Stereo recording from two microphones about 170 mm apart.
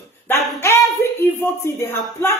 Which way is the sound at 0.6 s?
15° left (ahead or behind).